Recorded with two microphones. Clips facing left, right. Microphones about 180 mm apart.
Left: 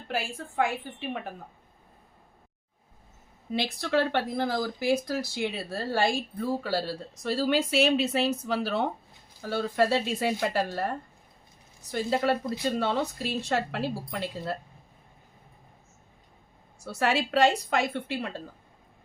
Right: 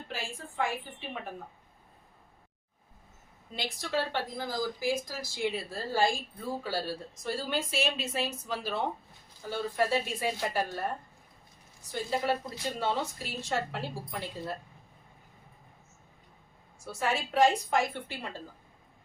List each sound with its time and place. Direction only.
0.1 s speech: 70° left (ahead or behind)
3.5 s speech: 65° left (ahead or behind)
11.9 s speech: 70° left (ahead or behind)
16.8 s speech: 70° left (ahead or behind)